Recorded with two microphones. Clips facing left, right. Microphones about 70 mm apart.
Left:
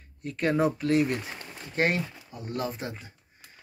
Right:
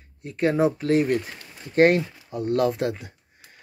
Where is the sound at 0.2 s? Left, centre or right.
Right.